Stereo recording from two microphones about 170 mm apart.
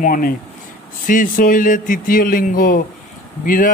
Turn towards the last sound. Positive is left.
turn(degrees=55)  # may be behind; listen again after turning